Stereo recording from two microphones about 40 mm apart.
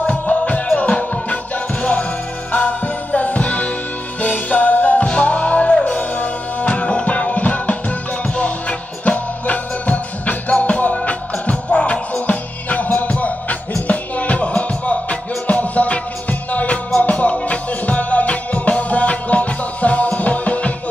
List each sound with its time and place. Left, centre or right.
0.3 s music: left